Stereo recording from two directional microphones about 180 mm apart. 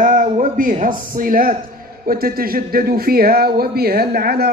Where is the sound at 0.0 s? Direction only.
45° right (ahead or behind).